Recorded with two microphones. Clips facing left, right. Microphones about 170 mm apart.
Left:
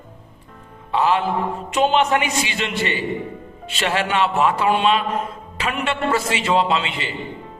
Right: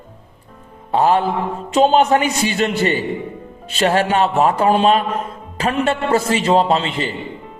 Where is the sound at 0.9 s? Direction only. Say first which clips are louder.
Right 3 dB; 40° right (ahead or behind).